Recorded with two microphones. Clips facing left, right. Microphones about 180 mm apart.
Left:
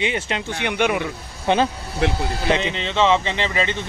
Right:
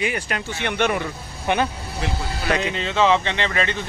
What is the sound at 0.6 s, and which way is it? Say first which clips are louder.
Speech: left 1 dB; 10° left (ahead or behind).